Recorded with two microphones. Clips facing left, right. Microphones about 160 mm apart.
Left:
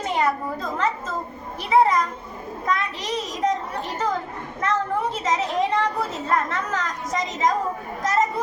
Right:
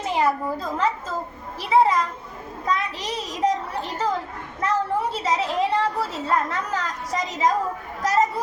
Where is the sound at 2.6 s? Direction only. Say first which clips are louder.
Even; 35° right (ahead or behind).